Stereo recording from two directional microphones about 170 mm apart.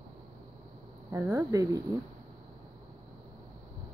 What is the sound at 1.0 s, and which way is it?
Speech, 15° right (ahead or behind).